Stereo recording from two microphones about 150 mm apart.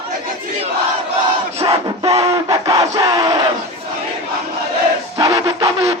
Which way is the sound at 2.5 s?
25° right (ahead or behind).